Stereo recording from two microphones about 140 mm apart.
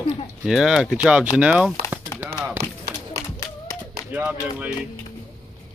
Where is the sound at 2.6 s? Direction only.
90° right.